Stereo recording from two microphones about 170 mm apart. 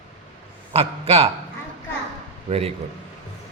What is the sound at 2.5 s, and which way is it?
Speech, 35° right (ahead or behind).